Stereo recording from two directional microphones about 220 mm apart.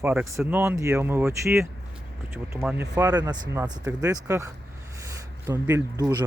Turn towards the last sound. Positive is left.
turn(degrees=-15)  # may be behind; listen again after turning